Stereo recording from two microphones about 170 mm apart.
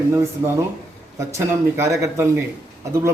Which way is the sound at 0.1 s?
15° right (ahead or behind).